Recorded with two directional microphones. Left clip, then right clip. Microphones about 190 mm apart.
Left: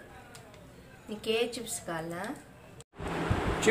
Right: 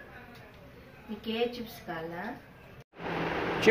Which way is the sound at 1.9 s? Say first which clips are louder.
Left 2 dB; 50° left (ahead or behind).